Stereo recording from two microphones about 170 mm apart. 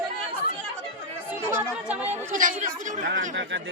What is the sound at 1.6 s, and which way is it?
Chatter, 10° right (ahead or behind).